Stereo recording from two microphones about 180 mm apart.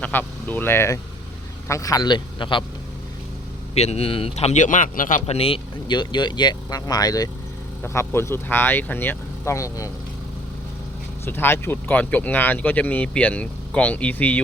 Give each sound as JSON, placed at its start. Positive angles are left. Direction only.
{"t": 0.0, "sound": "a man's voice", "side_deg": 10}
{"t": 3.8, "sound": "speech", "side_deg": 35}
{"t": 11.3, "sound": "speech", "side_deg": 10}